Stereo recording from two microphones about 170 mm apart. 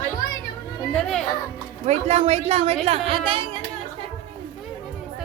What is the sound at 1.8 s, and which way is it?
Speech, 40° right (ahead or behind).